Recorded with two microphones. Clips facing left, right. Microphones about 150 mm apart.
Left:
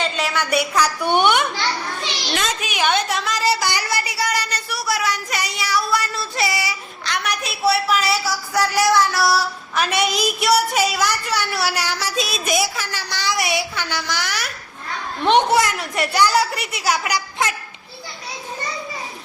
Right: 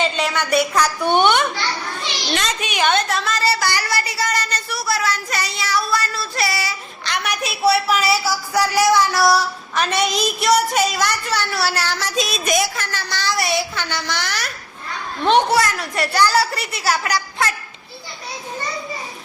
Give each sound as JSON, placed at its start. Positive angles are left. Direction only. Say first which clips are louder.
{"t": 0.0, "sound": "a woman's voice", "louder": "right 2 dB", "side_deg": 0}
{"t": 7.0, "sound": "a woman's voice", "louder": "right 1 dB", "side_deg": 0}
{"t": 15.3, "sound": "a woman's voice", "louder": "even", "side_deg": 20}